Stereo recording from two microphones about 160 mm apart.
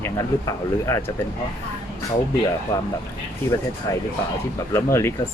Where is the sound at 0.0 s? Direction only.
20° left (ahead or behind).